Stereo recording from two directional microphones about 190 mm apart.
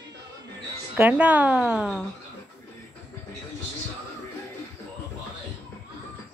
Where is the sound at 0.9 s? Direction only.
5° right (ahead or behind).